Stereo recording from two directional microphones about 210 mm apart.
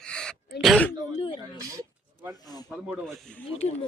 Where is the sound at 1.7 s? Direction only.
15° right (ahead or behind).